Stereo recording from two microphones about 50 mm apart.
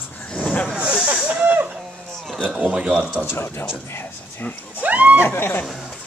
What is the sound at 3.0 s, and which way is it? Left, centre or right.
Speech, right.